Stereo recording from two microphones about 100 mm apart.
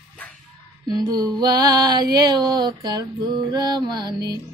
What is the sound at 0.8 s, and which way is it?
Speech, 40° right (ahead or behind).